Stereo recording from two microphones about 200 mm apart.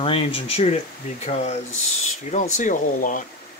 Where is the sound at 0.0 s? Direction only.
25° left (ahead or behind).